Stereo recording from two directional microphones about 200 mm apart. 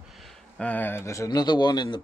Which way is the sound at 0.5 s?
5° left (ahead or behind).